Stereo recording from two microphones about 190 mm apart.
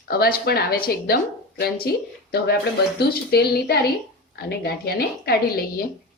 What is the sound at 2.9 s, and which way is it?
A woman's voice, 60° left (ahead or behind).